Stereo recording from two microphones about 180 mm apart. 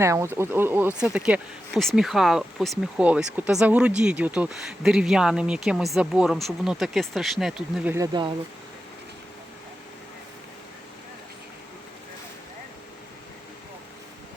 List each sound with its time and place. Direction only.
0.0 s speech: 15° right (ahead or behind); by 7.5 s centre (ahead or behind)
7.8 s speech: 15° right (ahead or behind)